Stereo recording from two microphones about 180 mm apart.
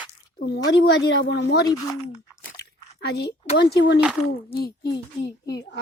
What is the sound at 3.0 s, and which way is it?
A woman's voice, 65° left (ahead or behind).